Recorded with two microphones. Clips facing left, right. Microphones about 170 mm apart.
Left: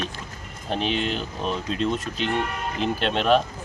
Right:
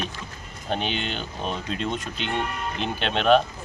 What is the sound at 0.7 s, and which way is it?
Speech, centre (ahead or behind).